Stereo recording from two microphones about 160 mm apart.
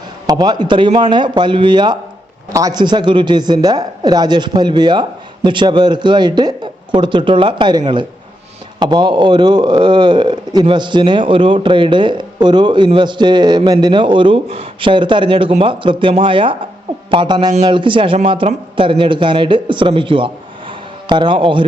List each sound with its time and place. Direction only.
0.3 s speech: 25° right (ahead or behind)